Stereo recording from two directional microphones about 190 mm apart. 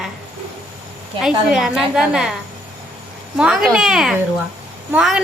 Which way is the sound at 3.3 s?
5° right (ahead or behind).